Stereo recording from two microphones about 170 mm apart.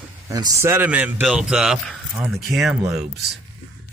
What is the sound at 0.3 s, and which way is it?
A man's voice, 20° right (ahead or behind).